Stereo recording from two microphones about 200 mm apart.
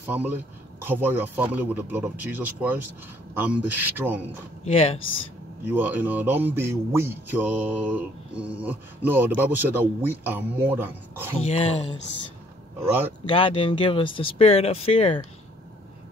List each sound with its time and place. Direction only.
0.0 s speech: 10° right (ahead or behind)
4.6 s speech: 30° left (ahead or behind)
5.7 s speech: 10° right (ahead or behind)
11.4 s speech: 30° left (ahead or behind)
12.8 s speech: 10° right (ahead or behind)
13.2 s speech: 25° left (ahead or behind)